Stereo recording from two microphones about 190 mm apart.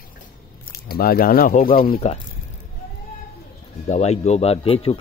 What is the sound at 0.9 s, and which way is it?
Speech, 55° left (ahead or behind).